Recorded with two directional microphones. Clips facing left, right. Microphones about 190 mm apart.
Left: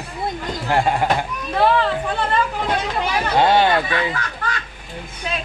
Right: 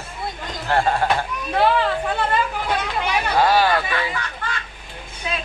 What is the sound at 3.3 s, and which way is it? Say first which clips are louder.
Speech: left 2 dB; 25° left (ahead or behind).